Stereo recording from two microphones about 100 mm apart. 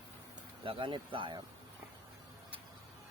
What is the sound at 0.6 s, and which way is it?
Speech, 55° right (ahead or behind).